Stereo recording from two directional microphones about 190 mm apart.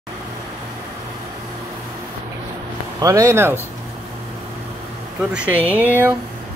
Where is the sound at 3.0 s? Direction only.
15° right (ahead or behind).